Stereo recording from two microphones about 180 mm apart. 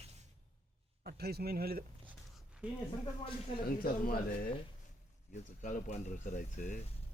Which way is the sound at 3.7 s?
50° left (ahead or behind).